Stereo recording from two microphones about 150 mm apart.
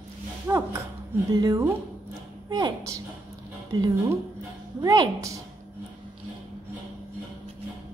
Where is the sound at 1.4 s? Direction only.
20° right (ahead or behind).